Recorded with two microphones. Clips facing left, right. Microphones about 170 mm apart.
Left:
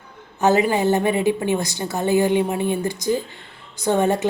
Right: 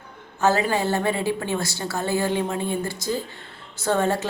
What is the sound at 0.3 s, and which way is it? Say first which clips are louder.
Speech: left 4 dB; 20° left (ahead or behind).